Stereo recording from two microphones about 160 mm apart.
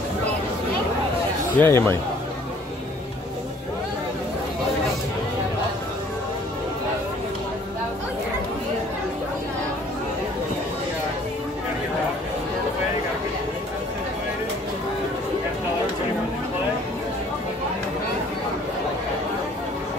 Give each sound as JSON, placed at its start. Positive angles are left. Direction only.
{"t": 1.6, "sound": "speech", "side_deg": 15}